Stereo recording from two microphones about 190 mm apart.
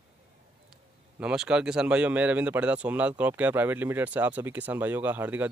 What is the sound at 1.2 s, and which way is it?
Speech, 5° right (ahead or behind).